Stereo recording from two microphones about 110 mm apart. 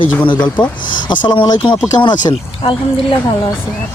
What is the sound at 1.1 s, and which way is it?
Speech, 45° left (ahead or behind).